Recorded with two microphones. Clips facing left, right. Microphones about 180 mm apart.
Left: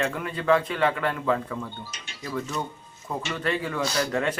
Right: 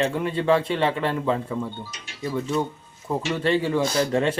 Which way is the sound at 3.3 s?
30° right (ahead or behind).